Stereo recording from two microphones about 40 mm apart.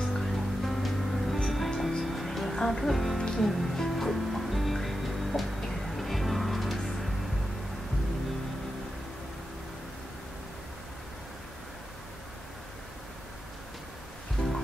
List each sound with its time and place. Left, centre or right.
0.2 s music: centre
14.4 s music: left